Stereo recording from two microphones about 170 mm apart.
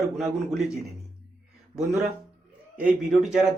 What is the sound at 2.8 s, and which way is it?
Speech, 5° right (ahead or behind).